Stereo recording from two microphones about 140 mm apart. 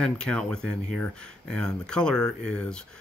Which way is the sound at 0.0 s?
5° left (ahead or behind).